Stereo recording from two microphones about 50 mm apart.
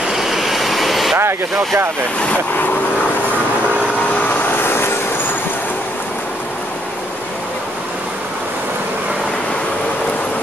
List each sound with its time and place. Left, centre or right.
0.1 s vehicle: centre
4.5 s vehicle: left